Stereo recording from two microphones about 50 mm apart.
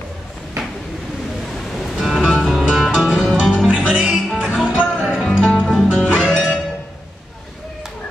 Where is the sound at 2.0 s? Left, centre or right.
Centre.